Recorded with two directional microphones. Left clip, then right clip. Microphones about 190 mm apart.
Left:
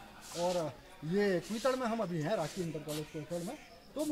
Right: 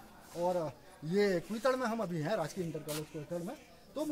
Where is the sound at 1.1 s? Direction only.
5° right (ahead or behind).